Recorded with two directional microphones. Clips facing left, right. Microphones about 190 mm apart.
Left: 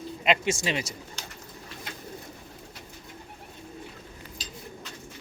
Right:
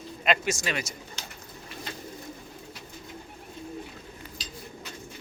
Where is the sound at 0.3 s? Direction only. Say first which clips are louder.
Left 1 dB; 25° left (ahead or behind).